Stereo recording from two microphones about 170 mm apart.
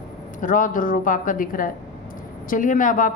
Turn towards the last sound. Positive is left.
turn(degrees=50)  # may be behind; listen again after turning